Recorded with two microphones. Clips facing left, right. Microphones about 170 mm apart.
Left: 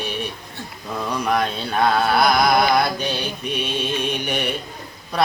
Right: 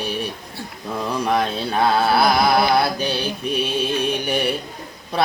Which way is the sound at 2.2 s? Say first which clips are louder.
Even; 30° right (ahead or behind).